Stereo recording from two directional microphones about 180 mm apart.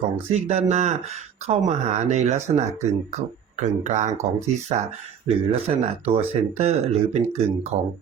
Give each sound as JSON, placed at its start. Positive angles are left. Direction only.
{"t": 0.3, "sound": "speech", "side_deg": -35}